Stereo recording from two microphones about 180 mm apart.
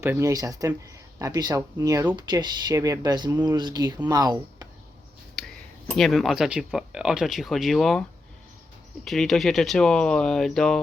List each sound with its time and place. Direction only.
0.0 s speech: 15° right (ahead or behind)
5.9 s speech: centre (ahead or behind)
9.0 s speech: centre (ahead or behind)